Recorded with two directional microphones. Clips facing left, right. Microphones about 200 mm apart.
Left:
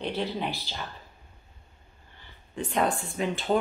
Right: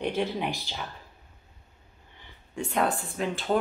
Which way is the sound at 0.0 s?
15° right (ahead or behind).